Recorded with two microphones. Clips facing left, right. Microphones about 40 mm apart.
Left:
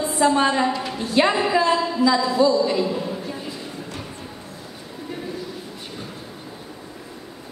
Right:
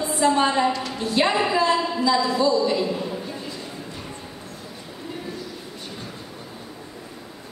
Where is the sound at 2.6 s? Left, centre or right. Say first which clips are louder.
Left 1 dB; centre.